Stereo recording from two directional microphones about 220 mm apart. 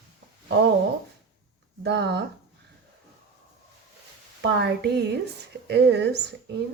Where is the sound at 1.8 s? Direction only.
50° right (ahead or behind).